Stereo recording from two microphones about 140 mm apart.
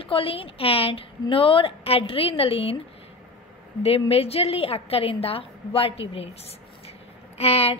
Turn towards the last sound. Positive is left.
turn(degrees=45)  # may be behind; listen again after turning